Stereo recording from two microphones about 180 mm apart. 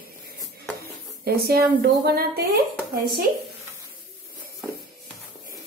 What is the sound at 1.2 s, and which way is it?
A woman's voice, 60° right (ahead or behind).